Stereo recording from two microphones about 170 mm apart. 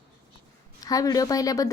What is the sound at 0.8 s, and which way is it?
Speech, 20° left (ahead or behind).